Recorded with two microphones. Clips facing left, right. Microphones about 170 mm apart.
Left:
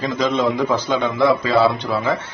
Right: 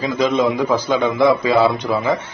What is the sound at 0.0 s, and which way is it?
A man's voice, 10° right (ahead or behind).